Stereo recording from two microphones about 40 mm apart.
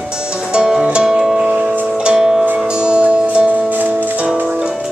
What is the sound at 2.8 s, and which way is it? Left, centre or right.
Music, right.